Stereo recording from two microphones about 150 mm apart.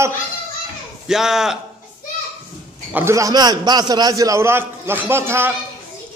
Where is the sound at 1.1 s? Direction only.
5° right (ahead or behind).